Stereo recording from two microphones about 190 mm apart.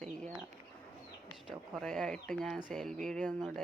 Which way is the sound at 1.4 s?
Centre (ahead or behind).